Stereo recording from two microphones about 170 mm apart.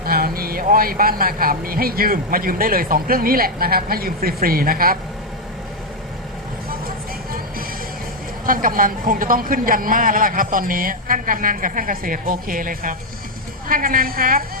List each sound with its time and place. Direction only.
0.0 s speech: 60° right (ahead or behind)
8.4 s speech: 55° right (ahead or behind)